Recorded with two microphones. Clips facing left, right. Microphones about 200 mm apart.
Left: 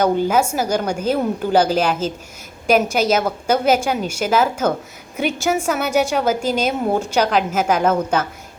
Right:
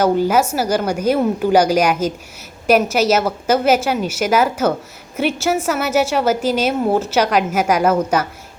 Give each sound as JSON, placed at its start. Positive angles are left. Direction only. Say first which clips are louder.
{"t": 0.0, "sound": "a woman's voice", "louder": "right 2 dB", "side_deg": -5}